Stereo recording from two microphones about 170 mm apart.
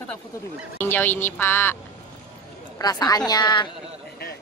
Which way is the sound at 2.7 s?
20° left (ahead or behind).